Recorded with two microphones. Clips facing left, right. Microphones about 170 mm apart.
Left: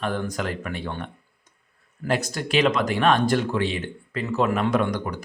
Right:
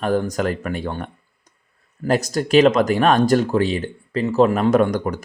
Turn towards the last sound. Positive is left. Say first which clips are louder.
# right 6 dB
turn(degrees=-45)  # may be behind; listen again after turning